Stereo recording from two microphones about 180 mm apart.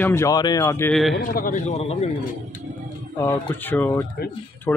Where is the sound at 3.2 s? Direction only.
10° left (ahead or behind).